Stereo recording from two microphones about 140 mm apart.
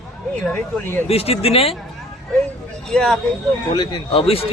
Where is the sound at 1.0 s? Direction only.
45° left (ahead or behind).